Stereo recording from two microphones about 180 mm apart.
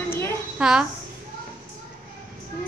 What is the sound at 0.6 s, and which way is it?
Speech, 5° right (ahead or behind).